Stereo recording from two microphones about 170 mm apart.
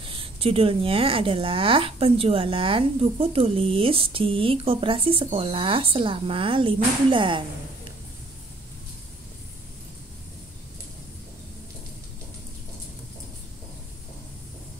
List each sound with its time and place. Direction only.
0.0 s speech: 30° right (ahead or behind)